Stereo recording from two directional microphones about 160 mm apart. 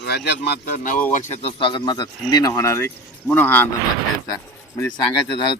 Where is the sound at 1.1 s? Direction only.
45° left (ahead or behind); by 3.7 s 10° left (ahead or behind).